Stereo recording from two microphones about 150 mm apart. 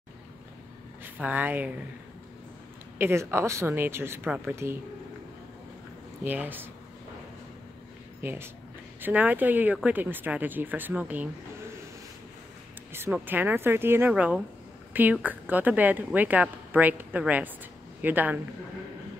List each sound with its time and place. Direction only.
1.0 s speech: 10° right (ahead or behind)
3.0 s a woman's voice: 15° right (ahead or behind)
6.2 s a woman's voice: 10° right (ahead or behind)
8.2 s a woman's voice: 15° right (ahead or behind)
12.9 s a woman's voice: 15° right (ahead or behind)